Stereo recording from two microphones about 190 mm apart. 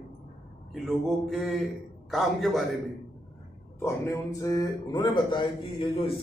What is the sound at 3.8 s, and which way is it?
A man's voice, 15° left (ahead or behind).